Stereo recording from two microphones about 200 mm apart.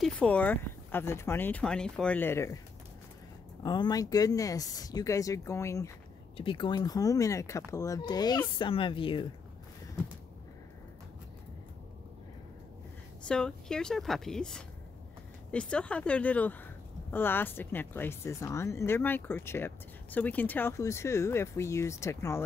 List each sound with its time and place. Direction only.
0.0 s speech: 5° left (ahead or behind)
3.6 s speech: 20° left (ahead or behind)
6.3 s speech: 25° left (ahead or behind)
13.2 s a woman's voice: 5° left (ahead or behind)